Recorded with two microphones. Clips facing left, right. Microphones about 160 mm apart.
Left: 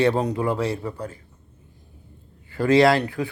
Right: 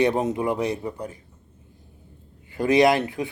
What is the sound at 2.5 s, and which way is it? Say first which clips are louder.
Speech: left 1 dB; 20° right (ahead or behind).